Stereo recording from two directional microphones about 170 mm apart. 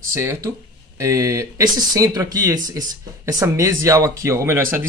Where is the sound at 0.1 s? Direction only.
15° right (ahead or behind).